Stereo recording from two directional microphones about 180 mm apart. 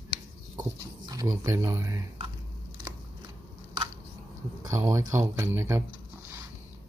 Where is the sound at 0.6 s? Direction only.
20° right (ahead or behind).